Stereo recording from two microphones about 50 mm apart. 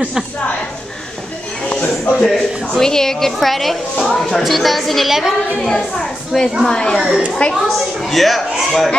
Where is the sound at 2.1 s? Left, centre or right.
Centre.